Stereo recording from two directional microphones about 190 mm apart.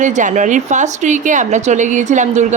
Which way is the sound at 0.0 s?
40° right (ahead or behind).